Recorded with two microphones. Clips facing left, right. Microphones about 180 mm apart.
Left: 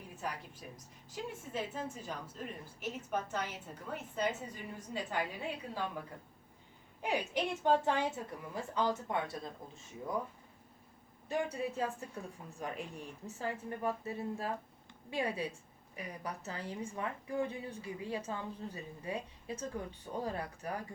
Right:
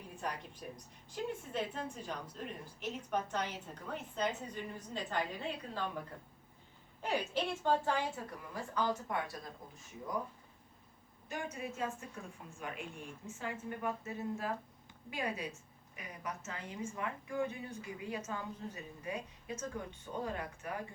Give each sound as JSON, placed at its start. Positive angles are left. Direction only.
{"t": 1.1, "sound": "a woman's voice", "side_deg": 5}
{"t": 7.0, "sound": "a woman's voice", "side_deg": 15}
{"t": 11.3, "sound": "a woman's voice", "side_deg": 35}